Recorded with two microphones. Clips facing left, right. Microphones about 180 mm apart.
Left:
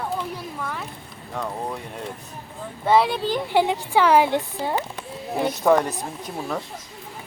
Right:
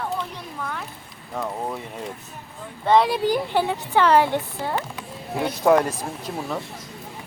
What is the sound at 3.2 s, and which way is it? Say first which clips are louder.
Speech: right 3 dB; 10° right (ahead or behind).